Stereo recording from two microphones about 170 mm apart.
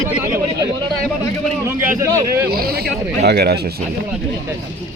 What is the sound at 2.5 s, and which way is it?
Speech, 65° right (ahead or behind).